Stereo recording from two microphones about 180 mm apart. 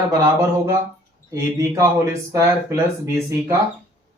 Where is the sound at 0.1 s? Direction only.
20° right (ahead or behind).